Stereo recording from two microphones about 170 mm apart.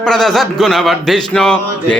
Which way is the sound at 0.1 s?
Centre (ahead or behind).